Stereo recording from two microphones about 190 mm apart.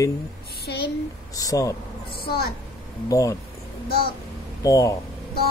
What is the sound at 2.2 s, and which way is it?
Speech, 55° left (ahead or behind).